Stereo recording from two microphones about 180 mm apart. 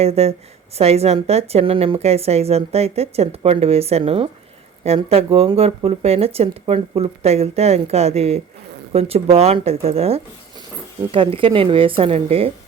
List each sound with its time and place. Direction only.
0.0 s a woman's voice: 35° right (ahead or behind)